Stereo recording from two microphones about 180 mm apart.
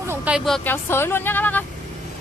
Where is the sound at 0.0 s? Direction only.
10° right (ahead or behind).